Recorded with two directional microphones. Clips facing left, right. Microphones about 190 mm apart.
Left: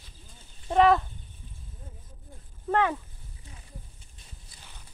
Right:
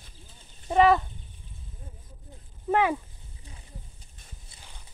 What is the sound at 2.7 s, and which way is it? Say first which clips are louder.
Speech: right 2 dB; 10° right (ahead or behind).